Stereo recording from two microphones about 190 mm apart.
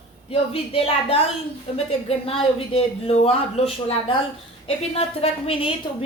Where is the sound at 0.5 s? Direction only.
30° left (ahead or behind).